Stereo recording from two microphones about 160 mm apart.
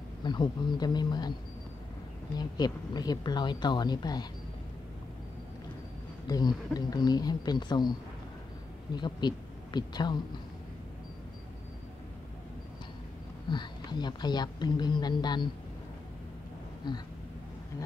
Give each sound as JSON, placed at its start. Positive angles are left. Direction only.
{"t": 0.2, "sound": "a woman's voice", "side_deg": 30}
{"t": 2.3, "sound": "a woman's voice", "side_deg": 25}
{"t": 6.2, "sound": "a woman's voice", "side_deg": 25}
{"t": 8.9, "sound": "speech", "side_deg": 25}
{"t": 13.5, "sound": "a woman's voice", "side_deg": 30}
{"t": 16.8, "sound": "a woman's voice", "side_deg": 30}